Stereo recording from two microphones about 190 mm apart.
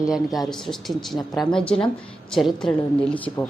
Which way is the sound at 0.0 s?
Centre (ahead or behind).